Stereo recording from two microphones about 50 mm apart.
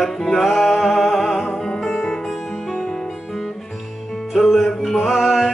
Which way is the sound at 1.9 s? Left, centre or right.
Centre.